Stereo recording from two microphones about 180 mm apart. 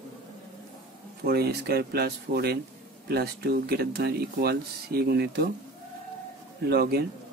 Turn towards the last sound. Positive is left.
turn(degrees=-60)  # may be behind; listen again after turning